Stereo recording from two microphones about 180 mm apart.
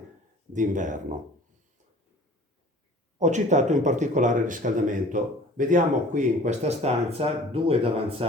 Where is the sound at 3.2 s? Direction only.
40° right (ahead or behind).